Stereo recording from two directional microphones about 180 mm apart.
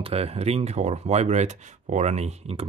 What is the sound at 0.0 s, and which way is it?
Speech, 35° right (ahead or behind).